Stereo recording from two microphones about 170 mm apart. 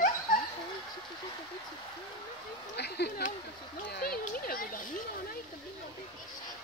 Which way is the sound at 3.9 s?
65° left (ahead or behind).